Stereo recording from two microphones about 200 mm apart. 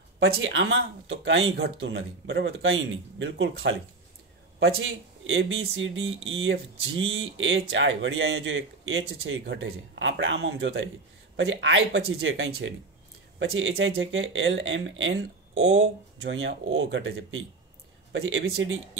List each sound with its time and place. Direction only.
0.4 s speech: 70° right (ahead or behind)
4.7 s a man's voice: 80° right